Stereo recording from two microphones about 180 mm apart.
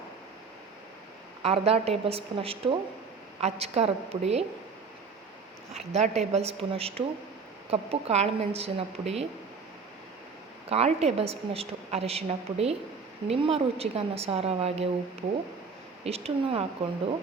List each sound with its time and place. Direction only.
1.4 s a woman's voice: 35° right (ahead or behind)
5.7 s a woman's voice: 35° right (ahead or behind)
10.7 s a woman's voice: 35° right (ahead or behind)
16.0 s a woman's voice: 35° right (ahead or behind)